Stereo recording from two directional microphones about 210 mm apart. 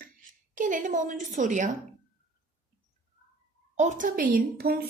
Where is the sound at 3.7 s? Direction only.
35° right (ahead or behind).